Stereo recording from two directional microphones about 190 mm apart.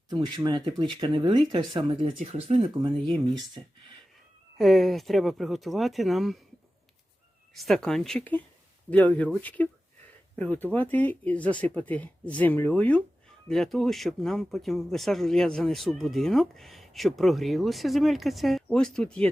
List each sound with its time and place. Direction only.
0.1 s speech: 25° right (ahead or behind)
4.5 s speech: centre (ahead or behind)
7.5 s speech: centre (ahead or behind)